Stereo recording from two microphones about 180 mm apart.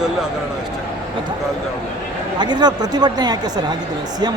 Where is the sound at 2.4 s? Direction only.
25° right (ahead or behind).